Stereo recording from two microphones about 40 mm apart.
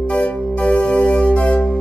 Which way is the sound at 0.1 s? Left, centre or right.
Left.